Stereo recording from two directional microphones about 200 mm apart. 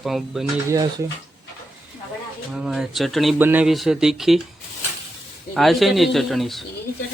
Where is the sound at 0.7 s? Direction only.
15° right (ahead or behind).